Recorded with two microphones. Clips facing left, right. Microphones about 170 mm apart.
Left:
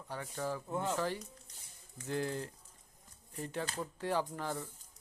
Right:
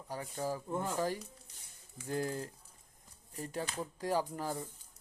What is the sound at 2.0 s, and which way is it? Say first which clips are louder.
Speech: even; 35° right (ahead or behind).